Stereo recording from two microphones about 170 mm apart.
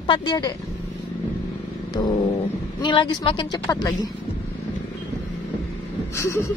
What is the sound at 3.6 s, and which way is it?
Speech, 20° left (ahead or behind).